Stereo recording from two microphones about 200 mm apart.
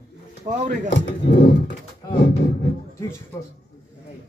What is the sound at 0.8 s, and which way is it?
Speech, 55° left (ahead or behind).